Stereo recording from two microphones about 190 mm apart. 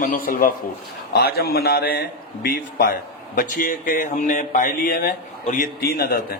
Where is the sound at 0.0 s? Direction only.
50° left (ahead or behind).